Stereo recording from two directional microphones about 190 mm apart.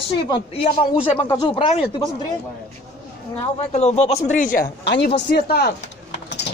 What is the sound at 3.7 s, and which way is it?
Speech, 35° left (ahead or behind).